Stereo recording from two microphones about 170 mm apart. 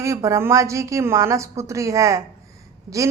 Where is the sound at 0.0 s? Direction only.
15° right (ahead or behind).